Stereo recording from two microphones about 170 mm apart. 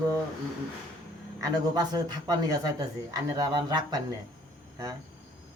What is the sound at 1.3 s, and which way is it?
A man's voice, 25° right (ahead or behind).